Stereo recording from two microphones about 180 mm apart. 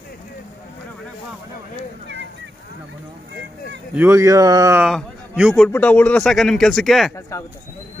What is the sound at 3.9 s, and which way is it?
Speech, 15° right (ahead or behind).